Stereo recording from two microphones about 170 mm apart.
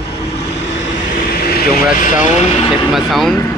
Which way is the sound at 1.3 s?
65° left (ahead or behind).